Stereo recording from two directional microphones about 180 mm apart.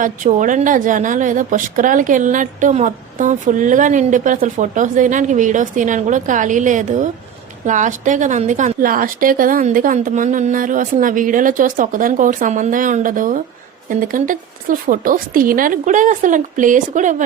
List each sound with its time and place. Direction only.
0.0 s a woman's voice: 45° right (ahead or behind)